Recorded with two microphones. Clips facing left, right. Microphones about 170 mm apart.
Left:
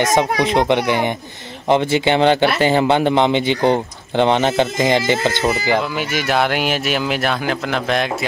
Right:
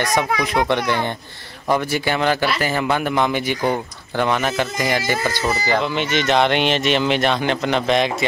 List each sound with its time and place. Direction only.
0.0 s speech: 20° left (ahead or behind)
5.9 s speech: 5° left (ahead or behind)